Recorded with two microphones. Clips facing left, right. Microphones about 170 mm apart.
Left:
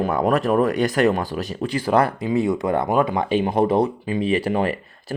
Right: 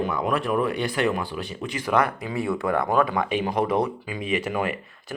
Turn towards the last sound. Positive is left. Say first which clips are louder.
# left 4 dB
turn(degrees=35)  # may be behind; listen again after turning